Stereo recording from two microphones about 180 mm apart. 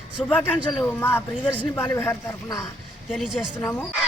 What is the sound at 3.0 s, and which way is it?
Speech, centre (ahead or behind).